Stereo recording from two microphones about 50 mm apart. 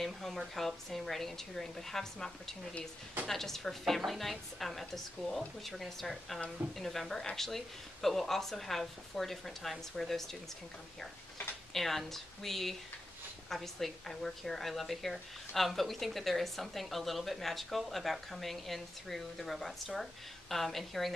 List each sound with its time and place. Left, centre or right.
0.0 s a woman's voice: centre
11.7 s a woman's voice: centre